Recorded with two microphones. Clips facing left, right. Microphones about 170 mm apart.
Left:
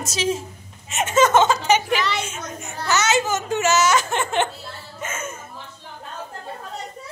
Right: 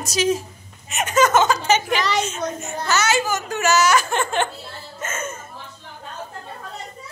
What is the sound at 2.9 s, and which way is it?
Speech, 20° left (ahead or behind).